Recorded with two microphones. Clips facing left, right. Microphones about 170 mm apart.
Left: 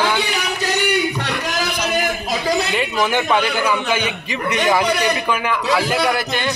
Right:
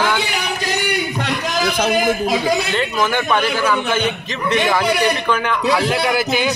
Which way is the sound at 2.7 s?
15° left (ahead or behind).